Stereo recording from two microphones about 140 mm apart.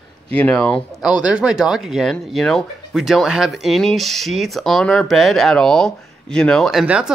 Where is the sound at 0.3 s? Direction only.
5° left (ahead or behind).